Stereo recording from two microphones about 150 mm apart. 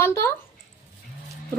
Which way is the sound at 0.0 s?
15° left (ahead or behind).